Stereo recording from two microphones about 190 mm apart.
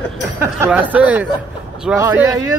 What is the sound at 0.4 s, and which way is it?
Speech, 10° right (ahead or behind).